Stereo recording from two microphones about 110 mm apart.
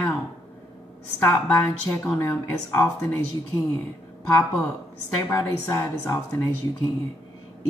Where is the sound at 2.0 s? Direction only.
20° left (ahead or behind).